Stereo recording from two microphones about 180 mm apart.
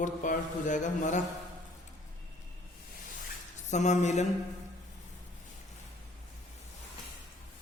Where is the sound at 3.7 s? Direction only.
40° left (ahead or behind).